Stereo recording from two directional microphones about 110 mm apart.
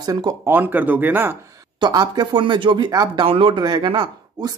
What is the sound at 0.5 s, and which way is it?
Speech, 15° right (ahead or behind).